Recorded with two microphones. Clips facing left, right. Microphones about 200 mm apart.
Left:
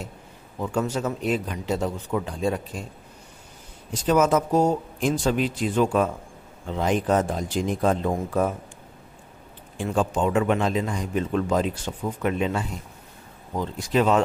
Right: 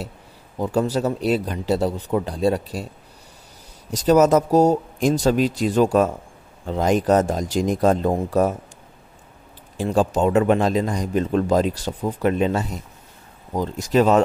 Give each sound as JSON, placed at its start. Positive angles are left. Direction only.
{"t": 0.6, "sound": "a man's voice", "side_deg": -35}
{"t": 3.9, "sound": "a man's voice", "side_deg": -40}
{"t": 9.8, "sound": "a man's voice", "side_deg": -35}